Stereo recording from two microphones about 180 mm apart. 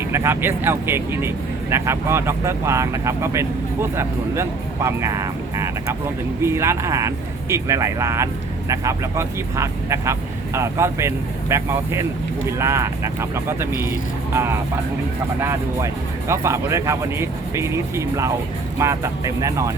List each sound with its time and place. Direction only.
0.1 s speech: 15° right (ahead or behind)
15.4 s speech: 15° right (ahead or behind)